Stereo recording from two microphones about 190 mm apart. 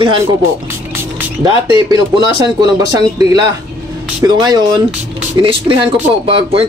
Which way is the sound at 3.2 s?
20° right (ahead or behind).